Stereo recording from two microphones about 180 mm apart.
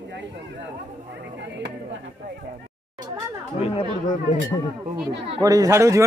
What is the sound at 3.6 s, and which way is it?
Speech, 35° left (ahead or behind).